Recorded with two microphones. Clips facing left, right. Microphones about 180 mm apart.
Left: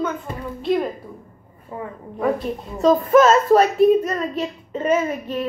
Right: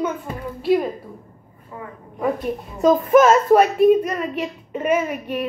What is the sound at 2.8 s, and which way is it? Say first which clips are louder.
A woman's voice: even; 10° right (ahead or behind).